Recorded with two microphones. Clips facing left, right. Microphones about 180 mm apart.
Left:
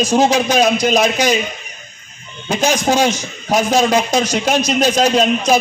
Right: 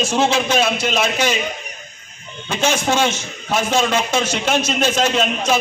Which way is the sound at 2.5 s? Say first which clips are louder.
Left 3 dB; 40° left (ahead or behind).